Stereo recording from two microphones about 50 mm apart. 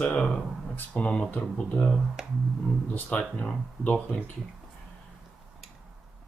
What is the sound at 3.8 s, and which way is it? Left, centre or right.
Speech, left.